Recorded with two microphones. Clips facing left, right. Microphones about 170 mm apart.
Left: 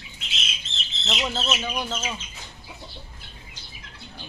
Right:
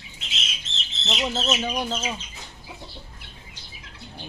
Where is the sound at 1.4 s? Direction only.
40° right (ahead or behind).